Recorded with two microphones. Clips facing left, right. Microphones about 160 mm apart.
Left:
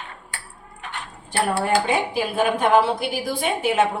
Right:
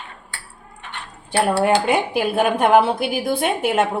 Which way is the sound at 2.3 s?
55° right (ahead or behind).